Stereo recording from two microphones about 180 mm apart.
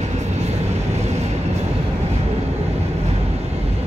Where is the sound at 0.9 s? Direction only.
40° right (ahead or behind).